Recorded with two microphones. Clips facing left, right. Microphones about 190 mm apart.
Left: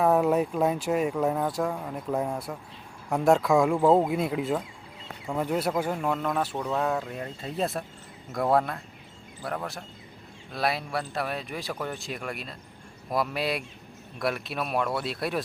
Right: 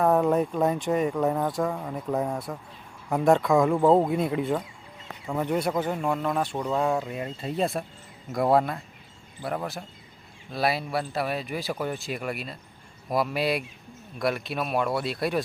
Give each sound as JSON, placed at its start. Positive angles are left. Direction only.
{"t": 0.0, "sound": "speech", "side_deg": 5}
{"t": 6.1, "sound": "speech", "side_deg": -5}